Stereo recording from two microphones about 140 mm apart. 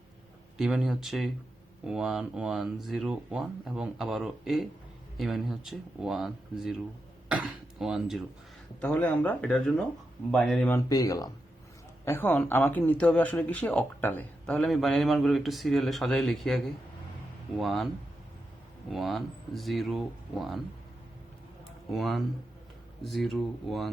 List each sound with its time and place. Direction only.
0.5 s a man's voice: 5° right (ahead or behind)
7.3 s a sound: 5° right (ahead or behind)
8.8 s a man's voice: 10° left (ahead or behind)
10.7 s speech: 25° left (ahead or behind)
12.0 s speech: 15° left (ahead or behind)
14.5 s a man's voice: centre (ahead or behind)
17.6 s a man's voice: centre (ahead or behind)
18.9 s a man's voice: centre (ahead or behind)
21.9 s a man's voice: centre (ahead or behind)